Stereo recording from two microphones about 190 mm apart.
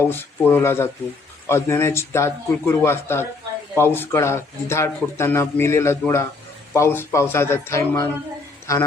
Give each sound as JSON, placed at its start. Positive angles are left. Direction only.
{"t": 0.0, "sound": "speech", "side_deg": 10}